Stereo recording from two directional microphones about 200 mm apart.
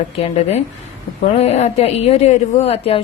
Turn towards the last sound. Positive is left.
turn(degrees=30)  # may be behind; listen again after turning